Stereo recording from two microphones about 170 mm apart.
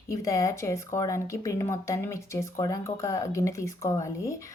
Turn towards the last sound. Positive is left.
turn(degrees=20)  # may be behind; listen again after turning